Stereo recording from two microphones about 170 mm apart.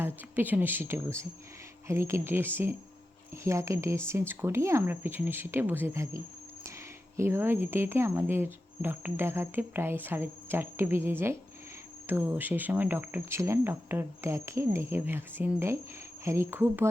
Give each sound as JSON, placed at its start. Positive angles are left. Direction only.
{"t": 0.0, "sound": "speech", "side_deg": -10}